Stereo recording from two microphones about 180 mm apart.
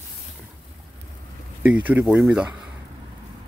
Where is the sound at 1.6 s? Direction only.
10° right (ahead or behind).